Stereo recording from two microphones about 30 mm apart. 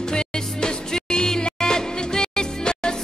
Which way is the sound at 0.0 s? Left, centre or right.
Left.